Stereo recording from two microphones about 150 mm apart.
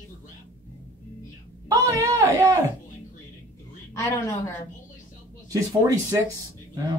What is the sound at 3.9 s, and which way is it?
Speech, 20° left (ahead or behind).